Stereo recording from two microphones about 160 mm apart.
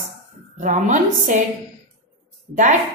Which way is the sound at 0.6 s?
50° right (ahead or behind).